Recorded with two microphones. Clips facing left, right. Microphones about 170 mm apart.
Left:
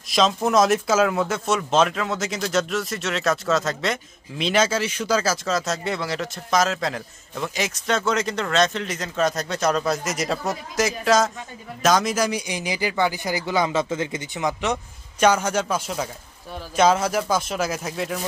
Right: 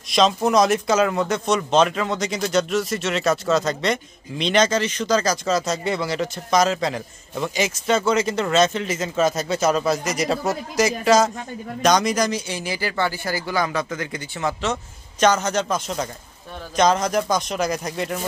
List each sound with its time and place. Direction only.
0.1 s a man's voice: centre (ahead or behind)